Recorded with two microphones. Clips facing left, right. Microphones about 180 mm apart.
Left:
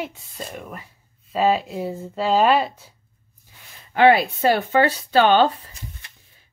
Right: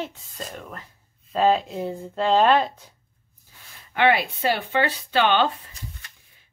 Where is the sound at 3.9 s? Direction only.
35° left (ahead or behind).